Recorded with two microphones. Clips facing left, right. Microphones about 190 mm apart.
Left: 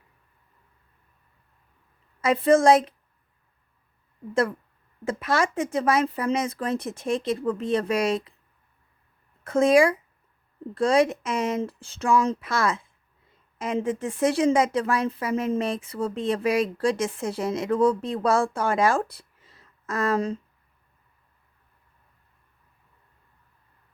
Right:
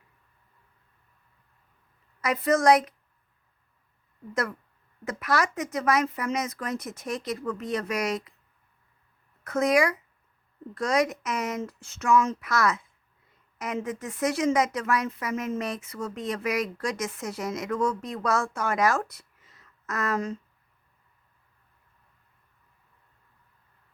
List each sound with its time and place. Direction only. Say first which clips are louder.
2.2 s a woman's voice: left 4 dB; 30° left (ahead or behind)
5.0 s a woman's voice: left 3 dB; 25° left (ahead or behind)
9.4 s a woman's voice: left 5 dB; 30° left (ahead or behind)